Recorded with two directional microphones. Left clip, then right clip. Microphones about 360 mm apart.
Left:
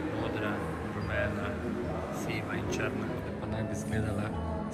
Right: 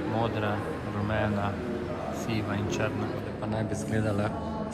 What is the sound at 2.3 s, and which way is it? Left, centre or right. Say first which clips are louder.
Speech: right 3 dB; centre.